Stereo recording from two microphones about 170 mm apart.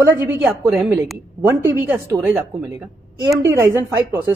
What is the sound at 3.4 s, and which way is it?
Speech, 15° right (ahead or behind).